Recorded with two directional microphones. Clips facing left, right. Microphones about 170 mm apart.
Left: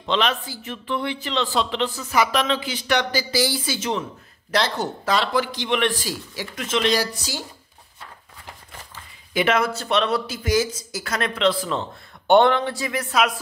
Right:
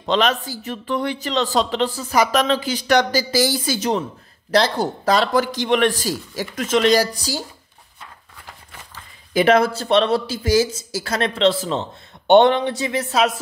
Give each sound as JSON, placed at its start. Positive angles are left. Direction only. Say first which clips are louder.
{"t": 0.0, "sound": "a man's voice", "louder": "right 4 dB", "side_deg": -40}
{"t": 9.3, "sound": "a man's voice", "louder": "right 5 dB", "side_deg": -40}